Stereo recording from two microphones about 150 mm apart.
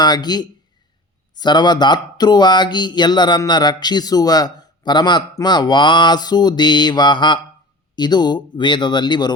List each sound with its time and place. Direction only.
0.0 s speech: 30° left (ahead or behind)